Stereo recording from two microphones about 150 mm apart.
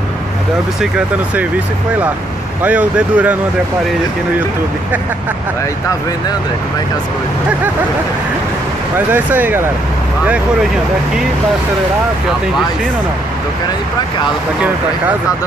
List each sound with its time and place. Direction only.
2.6 s speech: 10° right (ahead or behind)
8.9 s speech: 10° right (ahead or behind)